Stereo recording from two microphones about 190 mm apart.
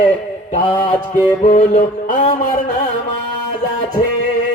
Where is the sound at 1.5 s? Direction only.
40° left (ahead or behind).